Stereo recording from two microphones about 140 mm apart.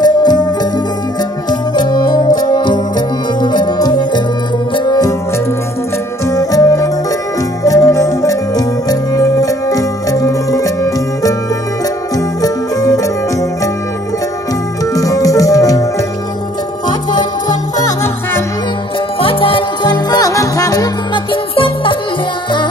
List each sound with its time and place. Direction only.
0.0 s music: 30° left (ahead or behind)
6.2 s music: 25° left (ahead or behind)
15.0 s music: 25° left (ahead or behind)
19.1 s music: 40° left (ahead or behind)
21.3 s music: 40° left (ahead or behind)